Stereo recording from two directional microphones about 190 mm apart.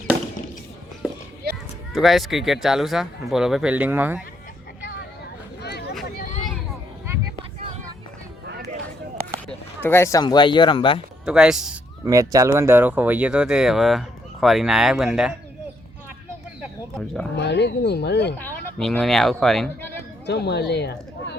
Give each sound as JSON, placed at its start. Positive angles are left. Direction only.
{"t": 1.9, "sound": "speech", "side_deg": 0}
{"t": 5.6, "sound": "a sound", "side_deg": 60}
{"t": 9.5, "sound": "speech", "side_deg": 10}
{"t": 11.3, "sound": "speech", "side_deg": -5}
{"t": 12.0, "sound": "speech", "side_deg": -15}
{"t": 17.3, "sound": "speech", "side_deg": 65}
{"t": 18.3, "sound": "speech", "side_deg": 5}
{"t": 20.2, "sound": "speech", "side_deg": 65}